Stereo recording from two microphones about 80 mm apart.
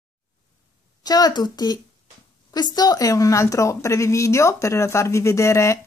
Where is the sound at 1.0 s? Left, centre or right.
Left.